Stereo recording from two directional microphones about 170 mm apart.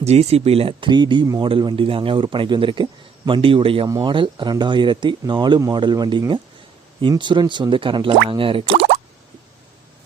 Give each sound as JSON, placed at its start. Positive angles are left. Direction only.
{"t": 0.0, "sound": "speech", "side_deg": -40}